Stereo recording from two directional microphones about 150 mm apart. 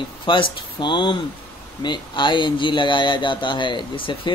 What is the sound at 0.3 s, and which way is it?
Speech, 30° left (ahead or behind).